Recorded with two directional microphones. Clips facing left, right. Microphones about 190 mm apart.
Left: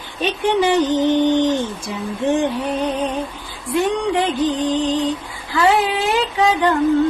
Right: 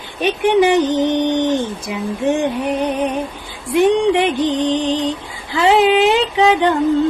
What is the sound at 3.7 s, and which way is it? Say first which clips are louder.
Speech: right 5 dB; 20° right (ahead or behind).